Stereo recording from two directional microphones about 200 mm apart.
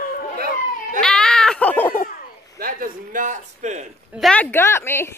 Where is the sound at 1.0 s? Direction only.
5° left (ahead or behind).